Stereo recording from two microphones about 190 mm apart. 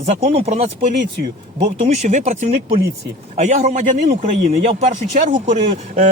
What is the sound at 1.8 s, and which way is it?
A man's voice, 40° right (ahead or behind).